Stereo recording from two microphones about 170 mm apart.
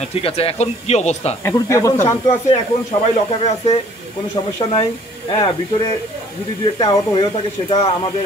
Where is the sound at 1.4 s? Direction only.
15° left (ahead or behind).